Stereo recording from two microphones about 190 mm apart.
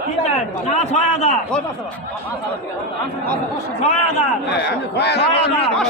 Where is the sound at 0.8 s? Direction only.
35° left (ahead or behind).